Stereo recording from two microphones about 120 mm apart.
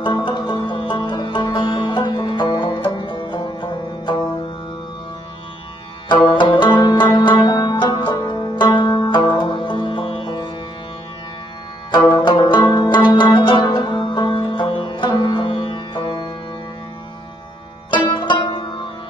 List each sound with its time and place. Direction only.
0.0 s music: 40° left (ahead or behind)
6.0 s music: 40° left (ahead or behind)
12.1 s music: 45° left (ahead or behind)
18.2 s music: 45° left (ahead or behind)